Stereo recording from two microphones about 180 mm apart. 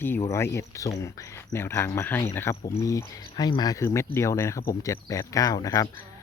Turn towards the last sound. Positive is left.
turn(degrees=20)  # may be behind; listen again after turning